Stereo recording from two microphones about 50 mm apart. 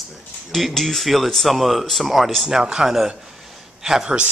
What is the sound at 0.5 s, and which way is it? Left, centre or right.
A man's voice, centre.